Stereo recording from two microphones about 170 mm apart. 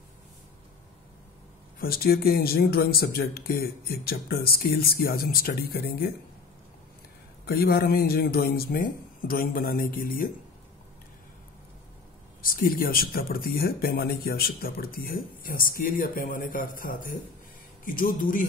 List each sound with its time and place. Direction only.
1.8 s speech: 60° left (ahead or behind)
7.4 s speech: 65° left (ahead or behind)
12.4 s speech: 60° left (ahead or behind)